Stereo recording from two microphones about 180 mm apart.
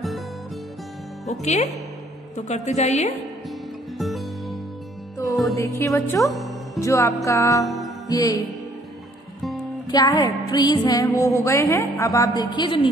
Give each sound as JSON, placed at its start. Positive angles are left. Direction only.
{"t": 1.4, "sound": "a woman's voice", "side_deg": 40}
{"t": 4.0, "sound": "music", "side_deg": 0}
{"t": 5.8, "sound": "speech", "side_deg": 15}
{"t": 6.2, "sound": "music", "side_deg": 0}
{"t": 6.8, "sound": "speech", "side_deg": 15}
{"t": 7.6, "sound": "music", "side_deg": 0}
{"t": 8.1, "sound": "music", "side_deg": 20}
{"t": 9.8, "sound": "music", "side_deg": 20}